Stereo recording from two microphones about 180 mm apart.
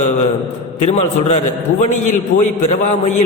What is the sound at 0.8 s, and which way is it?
Speech, 40° left (ahead or behind).